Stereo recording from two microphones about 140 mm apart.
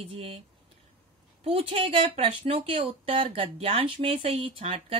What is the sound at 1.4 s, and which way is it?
Speech, 40° right (ahead or behind).